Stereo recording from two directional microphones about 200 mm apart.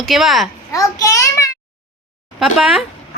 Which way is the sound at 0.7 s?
15° left (ahead or behind).